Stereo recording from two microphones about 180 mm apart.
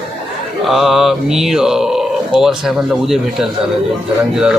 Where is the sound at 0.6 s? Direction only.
Centre (ahead or behind).